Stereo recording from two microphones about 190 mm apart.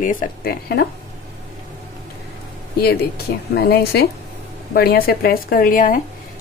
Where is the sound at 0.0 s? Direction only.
45° left (ahead or behind).